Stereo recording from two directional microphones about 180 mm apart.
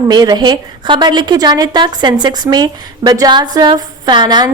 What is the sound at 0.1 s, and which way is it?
A woman's voice, 25° right (ahead or behind).